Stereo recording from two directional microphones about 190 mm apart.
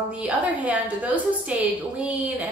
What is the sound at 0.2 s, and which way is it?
A woman's voice, 10° right (ahead or behind).